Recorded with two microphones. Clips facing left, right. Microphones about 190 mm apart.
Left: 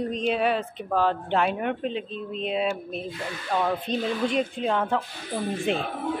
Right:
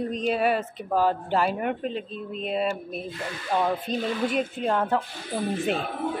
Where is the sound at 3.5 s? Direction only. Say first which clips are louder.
Right 1 dB; 15° right (ahead or behind).